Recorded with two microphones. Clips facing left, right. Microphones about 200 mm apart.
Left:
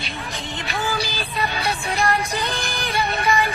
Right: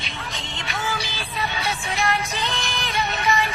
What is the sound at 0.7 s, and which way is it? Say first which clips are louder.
Music: left 3 dB; 35° left (ahead or behind).